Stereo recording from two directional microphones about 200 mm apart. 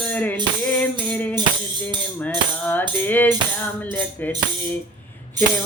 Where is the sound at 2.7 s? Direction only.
10° left (ahead or behind).